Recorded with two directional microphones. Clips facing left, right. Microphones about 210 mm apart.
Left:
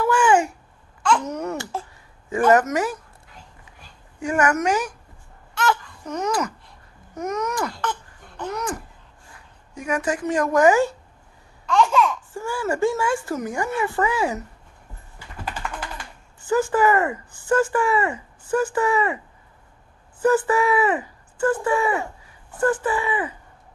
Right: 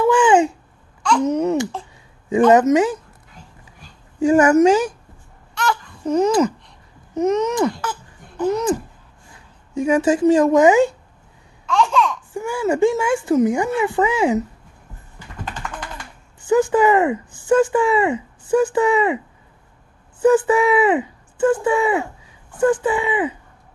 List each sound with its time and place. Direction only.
0.0 s babbling: 20° right (ahead or behind)
1.2 s speech: 20° right (ahead or behind)
4.2 s speech: 30° right (ahead or behind)
6.0 s speech: 30° right (ahead or behind)
7.8 s a sound: 5° right (ahead or behind)
8.5 s speech: 25° right (ahead or behind)
9.8 s speech: 25° right (ahead or behind)
11.6 s babbling: centre (ahead or behind)
12.4 s speech: 20° right (ahead or behind)
16.4 s speech: 15° right (ahead or behind)